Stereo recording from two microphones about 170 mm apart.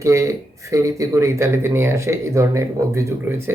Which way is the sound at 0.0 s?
15° right (ahead or behind).